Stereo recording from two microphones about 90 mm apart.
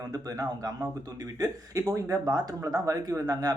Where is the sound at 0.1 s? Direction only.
40° right (ahead or behind).